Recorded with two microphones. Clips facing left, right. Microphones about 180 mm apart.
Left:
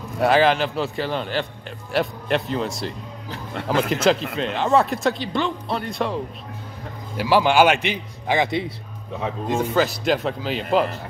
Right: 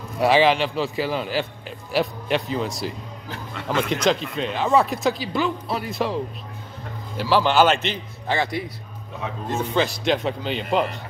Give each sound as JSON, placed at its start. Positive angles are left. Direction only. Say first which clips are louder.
{"t": 0.2, "sound": "a man's voice", "louder": "even", "side_deg": 0}
{"t": 7.2, "sound": "a man's voice", "louder": "left 1 dB", "side_deg": 10}
{"t": 9.5, "sound": "a man's voice", "louder": "left 2 dB", "side_deg": 5}